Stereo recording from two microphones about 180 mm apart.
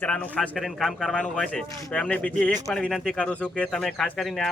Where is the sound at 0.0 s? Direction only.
5° left (ahead or behind).